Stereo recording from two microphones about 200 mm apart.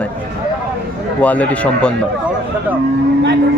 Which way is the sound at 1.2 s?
5° left (ahead or behind).